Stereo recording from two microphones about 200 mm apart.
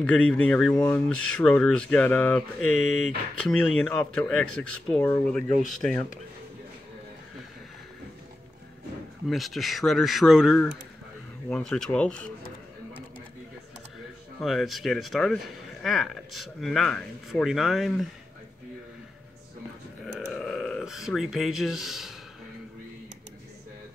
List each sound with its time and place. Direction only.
0.0 s speech: 5° left (ahead or behind)
9.3 s speech: centre (ahead or behind)
14.4 s speech: centre (ahead or behind)
20.2 s a sound: centre (ahead or behind)